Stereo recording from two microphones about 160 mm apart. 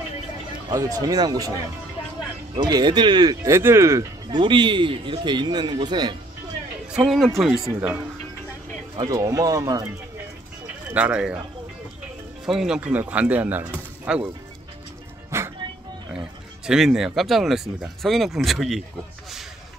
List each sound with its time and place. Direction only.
0.7 s speech: 20° right (ahead or behind)
4.4 s speech: 30° right (ahead or behind)
6.9 s speech: 5° right (ahead or behind)
8.9 s speech: 20° right (ahead or behind)
10.9 s speech: 10° right (ahead or behind)
12.4 s speech: 5° right (ahead or behind)
15.3 s music: 20° right (ahead or behind)
16.6 s speech: 5° right (ahead or behind)